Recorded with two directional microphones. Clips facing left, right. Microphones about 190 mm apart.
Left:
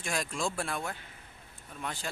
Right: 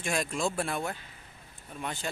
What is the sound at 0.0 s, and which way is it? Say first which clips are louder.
Speech: right 3 dB; centre (ahead or behind).